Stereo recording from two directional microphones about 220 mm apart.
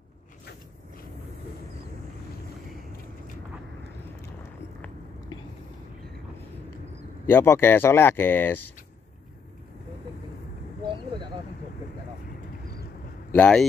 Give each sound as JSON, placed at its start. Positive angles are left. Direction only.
{"t": 7.2, "sound": "speech", "side_deg": 10}
{"t": 13.3, "sound": "speech", "side_deg": 5}